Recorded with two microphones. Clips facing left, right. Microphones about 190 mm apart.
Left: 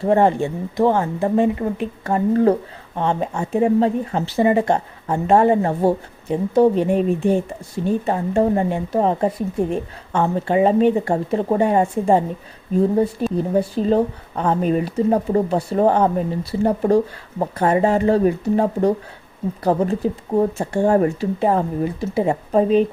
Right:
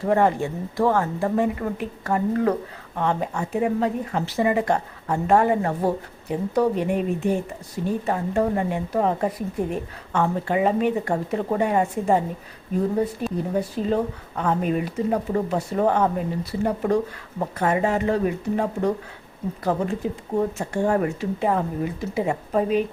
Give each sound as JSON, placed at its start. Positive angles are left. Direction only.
{"t": 0.0, "sound": "speech", "side_deg": 30}
{"t": 13.3, "sound": "speech", "side_deg": 30}